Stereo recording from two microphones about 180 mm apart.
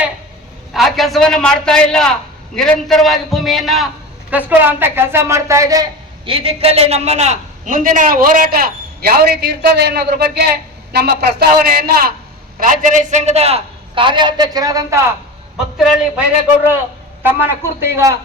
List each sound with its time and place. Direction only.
0.7 s a man's voice: centre (ahead or behind); by 12.1 s 60° right (ahead or behind)
12.5 s a man's voice: 50° right (ahead or behind); by 15.0 s 15° right (ahead or behind)
15.8 s a man's voice: 5° right (ahead or behind)
17.2 s a man's voice: 10° right (ahead or behind)